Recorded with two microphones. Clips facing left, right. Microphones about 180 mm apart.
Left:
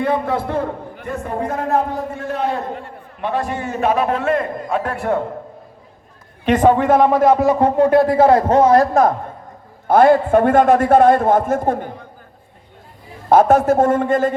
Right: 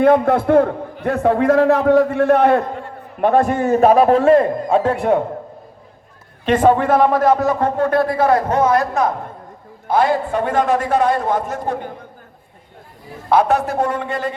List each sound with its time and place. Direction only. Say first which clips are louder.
0.0 s a man's voice: right 6 dB; 55° right (ahead or behind)
1.0 s a man's voice: right 9 dB; 90° right; by 2.6 s 65° right (ahead or behind)
3.2 s a man's voice: right 7 dB; 50° right (ahead or behind); by 5.2 s 20° right (ahead or behind)
6.4 s a man's voice: even; 15° left (ahead or behind); by 8.9 s 30° left (ahead or behind)
9.8 s a man's voice: left 5 dB; 55° left (ahead or behind)
13.3 s a man's voice: left 4 dB; 45° left (ahead or behind)